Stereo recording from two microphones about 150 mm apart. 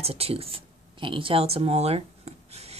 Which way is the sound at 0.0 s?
40° right (ahead or behind).